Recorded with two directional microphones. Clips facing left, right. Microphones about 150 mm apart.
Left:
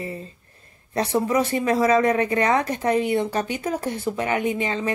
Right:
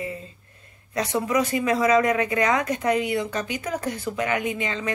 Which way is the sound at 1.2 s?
30° left (ahead or behind).